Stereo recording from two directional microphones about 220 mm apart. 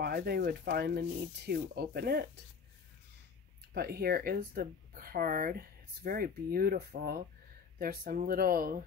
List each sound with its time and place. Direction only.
0.0 s speech: 45° right (ahead or behind)
3.7 s speech: 45° right (ahead or behind)